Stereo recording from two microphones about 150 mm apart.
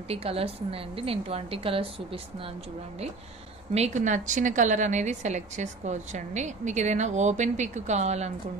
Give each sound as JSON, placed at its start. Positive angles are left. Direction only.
{"t": 0.1, "sound": "a woman's voice", "side_deg": -40}
{"t": 3.7, "sound": "a woman's voice", "side_deg": -50}